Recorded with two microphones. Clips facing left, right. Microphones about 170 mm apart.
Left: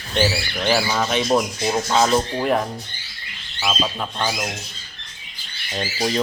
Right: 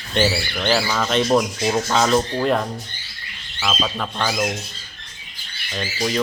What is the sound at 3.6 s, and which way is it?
Speech, 10° left (ahead or behind).